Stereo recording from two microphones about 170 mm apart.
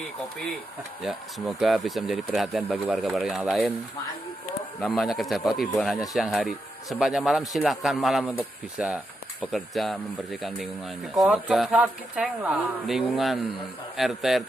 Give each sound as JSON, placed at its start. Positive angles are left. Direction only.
{"t": 1.0, "sound": "speech", "side_deg": -5}
{"t": 4.7, "sound": "speech", "side_deg": 0}
{"t": 11.1, "sound": "speech", "side_deg": -5}